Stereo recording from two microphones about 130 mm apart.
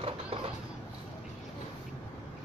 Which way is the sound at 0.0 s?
45° right (ahead or behind).